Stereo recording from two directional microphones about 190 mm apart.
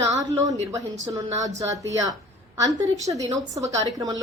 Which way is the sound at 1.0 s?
20° right (ahead or behind).